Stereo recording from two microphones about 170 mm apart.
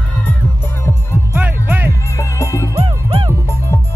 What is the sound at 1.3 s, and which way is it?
Music, 10° right (ahead or behind).